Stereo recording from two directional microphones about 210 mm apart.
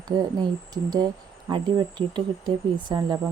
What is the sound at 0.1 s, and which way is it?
Speech, 15° right (ahead or behind).